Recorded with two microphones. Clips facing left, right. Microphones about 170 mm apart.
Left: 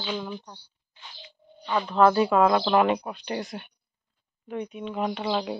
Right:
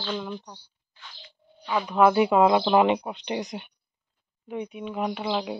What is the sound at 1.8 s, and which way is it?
Speech, 10° right (ahead or behind).